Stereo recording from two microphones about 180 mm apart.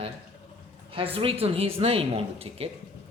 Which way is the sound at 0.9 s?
30° right (ahead or behind).